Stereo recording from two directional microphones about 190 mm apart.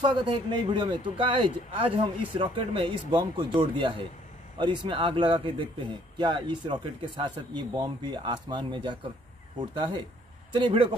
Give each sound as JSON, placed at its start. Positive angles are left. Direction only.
{"t": 0.0, "sound": "a man's voice", "side_deg": -25}
{"t": 10.5, "sound": "a man's voice", "side_deg": -25}